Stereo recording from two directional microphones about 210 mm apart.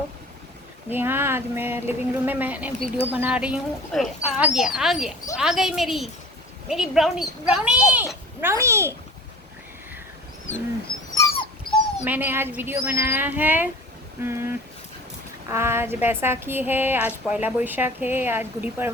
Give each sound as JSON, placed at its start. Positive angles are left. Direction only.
{"t": 0.9, "sound": "a woman's voice", "side_deg": -10}
{"t": 11.1, "sound": "dog", "side_deg": 15}
{"t": 12.0, "sound": "a woman's voice", "side_deg": -10}